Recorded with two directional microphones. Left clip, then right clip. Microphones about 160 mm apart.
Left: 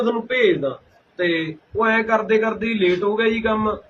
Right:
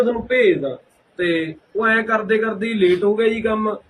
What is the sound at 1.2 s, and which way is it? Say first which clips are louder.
A man's voice: right 1 dB; 20° right (ahead or behind).